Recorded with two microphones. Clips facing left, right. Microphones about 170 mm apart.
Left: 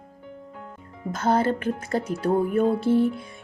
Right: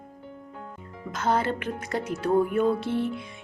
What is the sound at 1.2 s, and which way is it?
Music, 35° left (ahead or behind).